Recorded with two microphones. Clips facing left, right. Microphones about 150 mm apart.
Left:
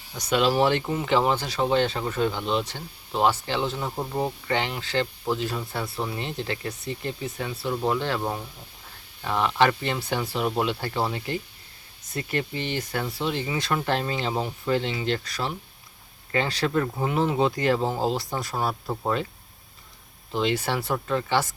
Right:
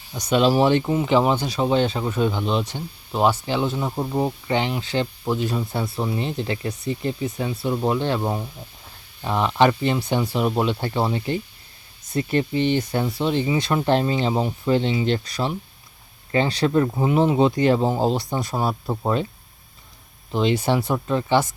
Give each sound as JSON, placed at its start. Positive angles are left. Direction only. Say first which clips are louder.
{"t": 0.2, "sound": "speech", "louder": "right 4 dB", "side_deg": -20}
{"t": 20.3, "sound": "speech", "louder": "right 5 dB", "side_deg": -20}